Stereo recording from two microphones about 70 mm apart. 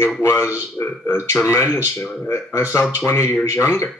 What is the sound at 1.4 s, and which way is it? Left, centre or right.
Speech, left.